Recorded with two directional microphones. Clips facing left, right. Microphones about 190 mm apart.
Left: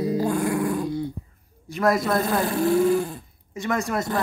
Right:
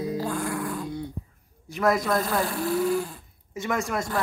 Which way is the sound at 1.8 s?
Centre (ahead or behind).